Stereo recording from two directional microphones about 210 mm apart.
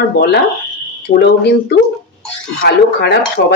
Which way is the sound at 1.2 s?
50° left (ahead or behind).